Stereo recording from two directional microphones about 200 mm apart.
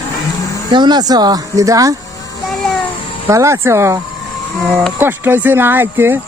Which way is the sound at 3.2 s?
15° right (ahead or behind).